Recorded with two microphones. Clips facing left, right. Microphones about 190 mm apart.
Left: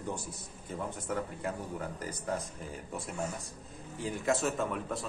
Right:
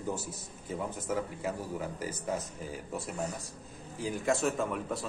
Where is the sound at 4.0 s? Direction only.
Centre (ahead or behind).